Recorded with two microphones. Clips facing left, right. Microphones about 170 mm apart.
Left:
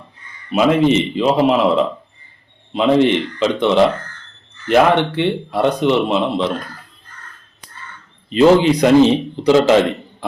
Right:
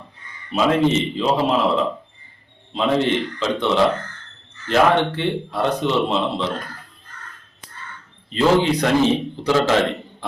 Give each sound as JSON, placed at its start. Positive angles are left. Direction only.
{"t": 0.5, "sound": "a man's voice", "side_deg": 15}
{"t": 8.3, "sound": "a man's voice", "side_deg": 15}